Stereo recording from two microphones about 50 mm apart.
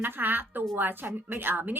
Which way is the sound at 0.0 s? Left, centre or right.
Right.